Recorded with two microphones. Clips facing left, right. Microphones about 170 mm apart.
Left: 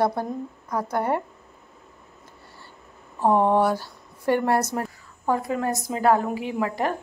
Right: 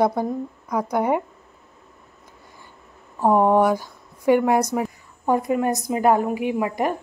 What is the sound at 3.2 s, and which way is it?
A woman's voice, 10° right (ahead or behind).